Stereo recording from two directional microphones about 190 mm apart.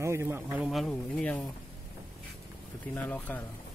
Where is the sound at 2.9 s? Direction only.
10° left (ahead or behind).